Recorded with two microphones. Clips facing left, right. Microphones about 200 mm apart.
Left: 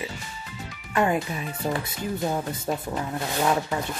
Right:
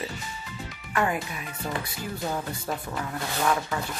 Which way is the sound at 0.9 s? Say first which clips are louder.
Left 4 dB; 25° left (ahead or behind).